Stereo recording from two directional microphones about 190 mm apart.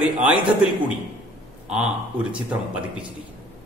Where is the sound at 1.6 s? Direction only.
5° right (ahead or behind).